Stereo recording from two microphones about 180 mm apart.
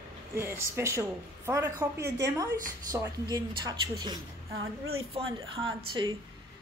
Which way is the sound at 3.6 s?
25° right (ahead or behind).